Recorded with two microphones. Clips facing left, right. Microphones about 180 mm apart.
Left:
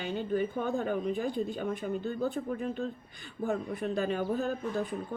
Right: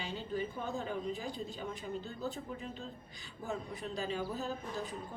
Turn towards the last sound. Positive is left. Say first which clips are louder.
# left 8 dB
turn(degrees=60)  # may be behind; listen again after turning